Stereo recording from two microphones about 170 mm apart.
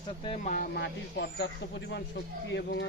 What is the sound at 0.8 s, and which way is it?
Speech, 80° left.